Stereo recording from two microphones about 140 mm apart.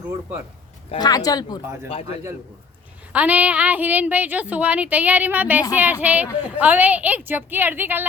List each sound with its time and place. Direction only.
0.9 s speech: 30° left (ahead or behind)
3.1 s a woman's voice: 10° right (ahead or behind)